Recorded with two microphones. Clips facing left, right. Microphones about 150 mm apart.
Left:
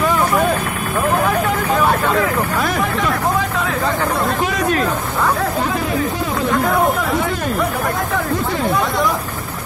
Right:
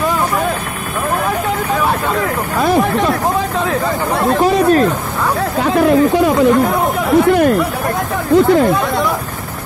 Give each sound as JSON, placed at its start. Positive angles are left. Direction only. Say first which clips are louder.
{"t": 2.6, "sound": "speech", "louder": "right 6 dB", "side_deg": -30}
{"t": 4.4, "sound": "speech", "louder": "right 7 dB", "side_deg": -35}
{"t": 5.6, "sound": "speech", "louder": "right 8 dB", "side_deg": -75}